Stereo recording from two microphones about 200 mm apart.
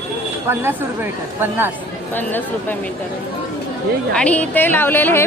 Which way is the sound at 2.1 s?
10° left (ahead or behind).